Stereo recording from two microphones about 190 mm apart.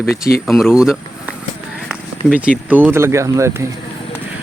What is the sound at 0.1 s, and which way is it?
Speech, 50° left (ahead or behind).